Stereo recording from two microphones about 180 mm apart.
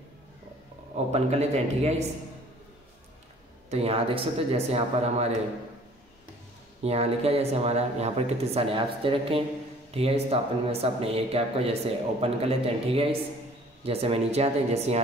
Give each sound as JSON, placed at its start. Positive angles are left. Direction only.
{"t": 0.9, "sound": "speech", "side_deg": -35}
{"t": 3.7, "sound": "speech", "side_deg": -35}
{"t": 6.8, "sound": "speech", "side_deg": -35}